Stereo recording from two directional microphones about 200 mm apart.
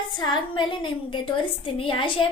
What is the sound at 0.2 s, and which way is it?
A woman's voice, 25° left (ahead or behind).